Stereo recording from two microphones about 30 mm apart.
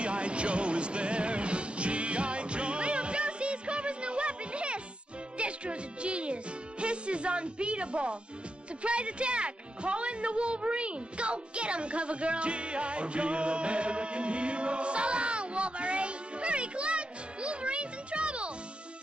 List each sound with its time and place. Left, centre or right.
0.0 s music: right
8.8 s speech: right